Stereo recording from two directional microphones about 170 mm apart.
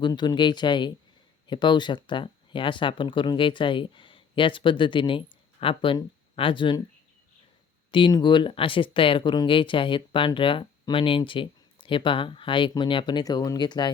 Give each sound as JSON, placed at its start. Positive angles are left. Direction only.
{"t": 0.0, "sound": "speech", "side_deg": 25}
{"t": 7.9, "sound": "speech", "side_deg": 30}